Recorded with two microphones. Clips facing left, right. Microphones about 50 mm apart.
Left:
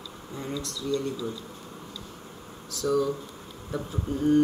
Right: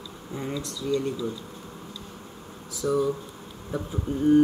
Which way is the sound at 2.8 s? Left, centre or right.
Centre.